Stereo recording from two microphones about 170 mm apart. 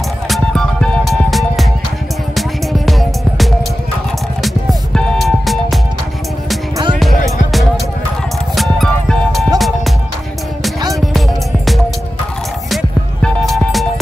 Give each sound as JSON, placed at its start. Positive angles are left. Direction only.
{"t": 0.3, "sound": "music", "side_deg": 5}
{"t": 8.5, "sound": "music", "side_deg": 0}
{"t": 11.0, "sound": "music", "side_deg": 0}